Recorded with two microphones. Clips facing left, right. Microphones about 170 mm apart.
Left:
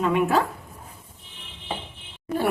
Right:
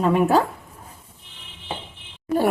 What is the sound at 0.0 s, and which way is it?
Speech, 40° right (ahead or behind).